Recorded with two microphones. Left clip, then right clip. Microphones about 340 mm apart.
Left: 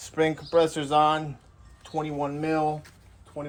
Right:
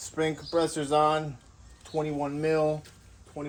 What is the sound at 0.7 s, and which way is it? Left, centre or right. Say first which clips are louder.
Speech: left 1 dB; centre.